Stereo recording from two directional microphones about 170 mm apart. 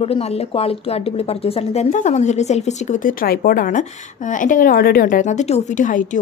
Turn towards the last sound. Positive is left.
turn(degrees=50)  # may be behind; listen again after turning